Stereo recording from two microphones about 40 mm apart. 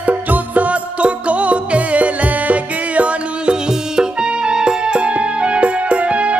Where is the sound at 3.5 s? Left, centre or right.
Right.